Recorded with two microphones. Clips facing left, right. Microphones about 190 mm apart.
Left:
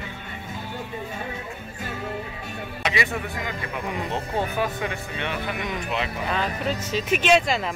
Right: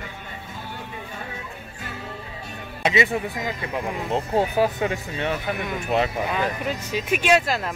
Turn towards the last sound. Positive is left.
turn(degrees=-5)  # may be behind; listen again after turning